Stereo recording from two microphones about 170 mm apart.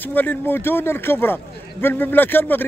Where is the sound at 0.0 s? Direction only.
10° left (ahead or behind).